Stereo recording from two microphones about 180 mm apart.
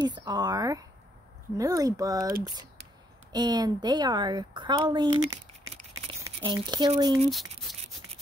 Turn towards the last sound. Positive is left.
turn(degrees=0)  # may be behind; listen again after turning